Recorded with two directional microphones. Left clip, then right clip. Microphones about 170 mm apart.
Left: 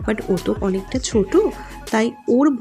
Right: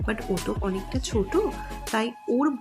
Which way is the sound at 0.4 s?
35° left (ahead or behind).